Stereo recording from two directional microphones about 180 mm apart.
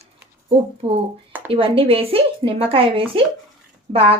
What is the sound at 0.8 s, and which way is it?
A woman's voice, 35° right (ahead or behind).